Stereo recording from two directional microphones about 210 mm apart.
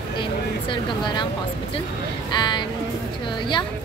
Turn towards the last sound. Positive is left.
turn(degrees=20)  # may be behind; listen again after turning